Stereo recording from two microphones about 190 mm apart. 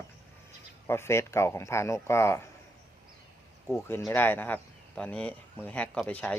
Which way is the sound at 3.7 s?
10° left (ahead or behind).